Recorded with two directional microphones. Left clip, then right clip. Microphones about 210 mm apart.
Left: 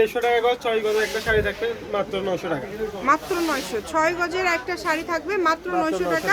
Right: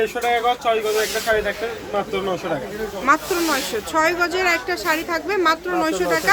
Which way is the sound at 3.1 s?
10° right (ahead or behind).